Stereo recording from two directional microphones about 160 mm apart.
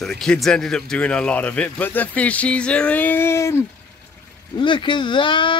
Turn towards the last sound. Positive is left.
turn(degrees=30)  # may be behind; listen again after turning